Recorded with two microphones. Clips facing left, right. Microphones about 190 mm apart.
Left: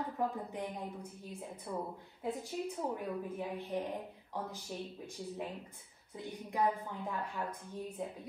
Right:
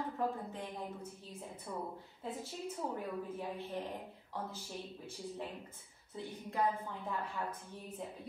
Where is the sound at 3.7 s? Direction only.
15° left (ahead or behind).